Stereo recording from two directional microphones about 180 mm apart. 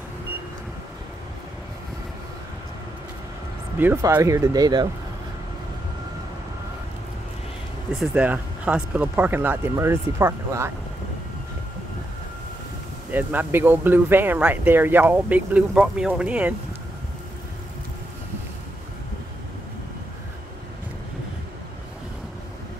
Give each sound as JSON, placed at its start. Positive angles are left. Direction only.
{"t": 3.7, "sound": "speech", "side_deg": -10}
{"t": 8.0, "sound": "speech", "side_deg": -10}
{"t": 13.1, "sound": "speech", "side_deg": -10}